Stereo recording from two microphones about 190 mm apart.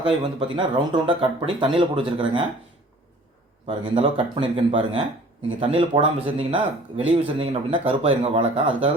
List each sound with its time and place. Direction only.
0.0 s speech: 25° right (ahead or behind)
3.7 s speech: 30° right (ahead or behind)